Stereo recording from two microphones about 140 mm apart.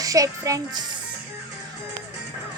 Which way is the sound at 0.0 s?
25° right (ahead or behind).